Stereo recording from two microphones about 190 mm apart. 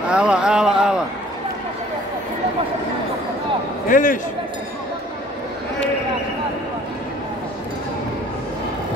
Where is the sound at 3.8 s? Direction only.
45° left (ahead or behind).